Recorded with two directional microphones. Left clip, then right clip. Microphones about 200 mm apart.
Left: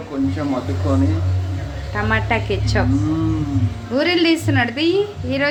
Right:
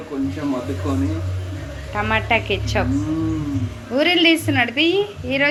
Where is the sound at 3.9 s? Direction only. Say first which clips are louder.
Right 1 dB; centre (ahead or behind).